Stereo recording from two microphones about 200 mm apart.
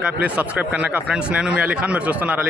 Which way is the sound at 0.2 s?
5° right (ahead or behind).